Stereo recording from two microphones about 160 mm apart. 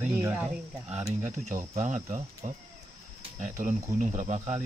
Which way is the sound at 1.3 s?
50° right (ahead or behind).